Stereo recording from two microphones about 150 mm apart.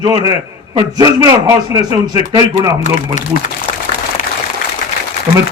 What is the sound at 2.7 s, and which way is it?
Speech, 50° left (ahead or behind).